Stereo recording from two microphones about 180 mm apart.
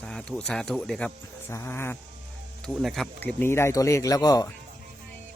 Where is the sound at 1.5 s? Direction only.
15° left (ahead or behind).